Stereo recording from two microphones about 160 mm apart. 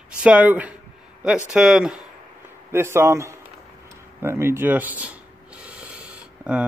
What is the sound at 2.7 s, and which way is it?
Speech, 15° right (ahead or behind).